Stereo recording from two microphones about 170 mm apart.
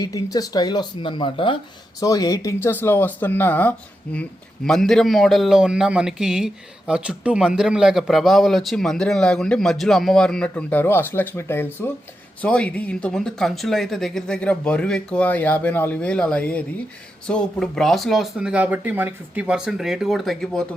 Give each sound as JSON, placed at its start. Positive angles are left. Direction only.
{"t": 0.0, "sound": "speech", "side_deg": 20}